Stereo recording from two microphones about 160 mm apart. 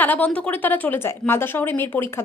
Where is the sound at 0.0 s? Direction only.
10° left (ahead or behind).